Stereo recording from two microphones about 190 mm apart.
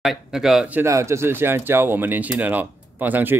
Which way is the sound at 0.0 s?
Centre (ahead or behind).